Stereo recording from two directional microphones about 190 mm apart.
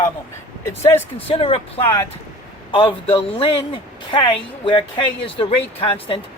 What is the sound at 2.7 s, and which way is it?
Speech, 30° left (ahead or behind).